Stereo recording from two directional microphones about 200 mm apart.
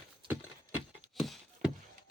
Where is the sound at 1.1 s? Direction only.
Centre (ahead or behind).